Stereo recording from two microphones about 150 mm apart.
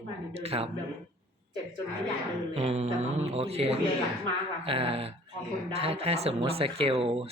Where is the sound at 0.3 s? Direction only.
40° right (ahead or behind).